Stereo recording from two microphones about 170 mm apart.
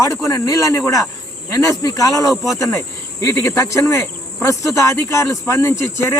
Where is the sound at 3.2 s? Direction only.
20° left (ahead or behind).